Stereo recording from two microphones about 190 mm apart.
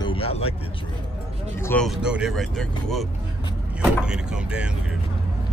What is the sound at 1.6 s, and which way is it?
Speech, 10° left (ahead or behind).